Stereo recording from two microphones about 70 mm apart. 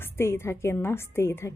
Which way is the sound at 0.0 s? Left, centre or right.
Left.